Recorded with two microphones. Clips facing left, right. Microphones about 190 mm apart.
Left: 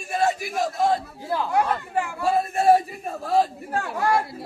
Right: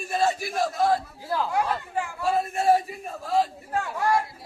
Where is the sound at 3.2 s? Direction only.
65° left (ahead or behind).